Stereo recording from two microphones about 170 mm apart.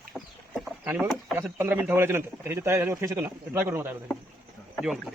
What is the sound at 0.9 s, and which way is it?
Speech, 10° right (ahead or behind).